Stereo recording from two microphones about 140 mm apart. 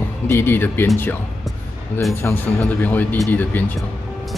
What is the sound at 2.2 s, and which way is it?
Speech, 15° left (ahead or behind).